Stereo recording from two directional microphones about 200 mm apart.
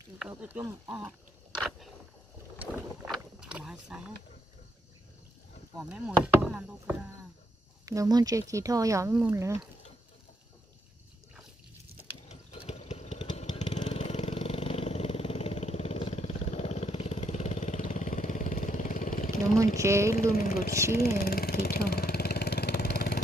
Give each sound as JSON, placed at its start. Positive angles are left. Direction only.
{"t": 0.3, "sound": "speech", "side_deg": -10}
{"t": 2.6, "sound": "vehicle", "side_deg": -5}
{"t": 5.9, "sound": "speech", "side_deg": -5}
{"t": 7.8, "sound": "speech", "side_deg": -15}
{"t": 12.3, "sound": "vehicle", "side_deg": 30}
{"t": 19.6, "sound": "speech", "side_deg": -15}
{"t": 20.2, "sound": "speech", "side_deg": 45}
{"t": 21.0, "sound": "vehicle", "side_deg": 50}